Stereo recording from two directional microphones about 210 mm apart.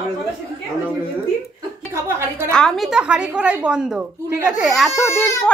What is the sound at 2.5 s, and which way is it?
A woman's voice, centre (ahead or behind).